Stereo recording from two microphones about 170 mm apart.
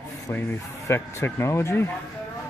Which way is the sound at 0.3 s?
15° left (ahead or behind).